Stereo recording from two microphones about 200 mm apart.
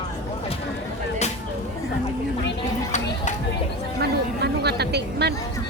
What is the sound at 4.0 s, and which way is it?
Speech, 55° right (ahead or behind).